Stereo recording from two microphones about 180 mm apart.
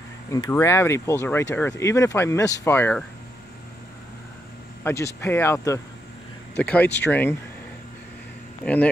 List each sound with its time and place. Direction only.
0.3 s speech: 15° left (ahead or behind)
4.8 s speech: 15° left (ahead or behind)